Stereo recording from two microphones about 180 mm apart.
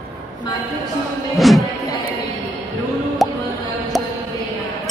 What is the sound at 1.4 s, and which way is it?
Music, centre (ahead or behind).